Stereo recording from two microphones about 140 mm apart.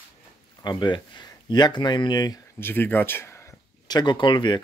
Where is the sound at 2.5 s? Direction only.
15° left (ahead or behind).